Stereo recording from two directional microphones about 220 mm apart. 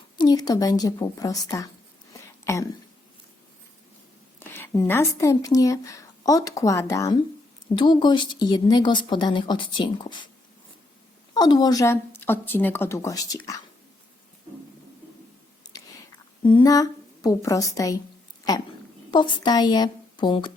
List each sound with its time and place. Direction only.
0.2 s speech: 20° left (ahead or behind)
2.4 s a sound: 15° left (ahead or behind)
4.4 s speech: 10° left (ahead or behind)
11.3 s speech: 20° left (ahead or behind)
15.6 s chewing: 20° left (ahead or behind)
16.4 s a woman's voice: 20° left (ahead or behind)
19.1 s speech: 20° left (ahead or behind)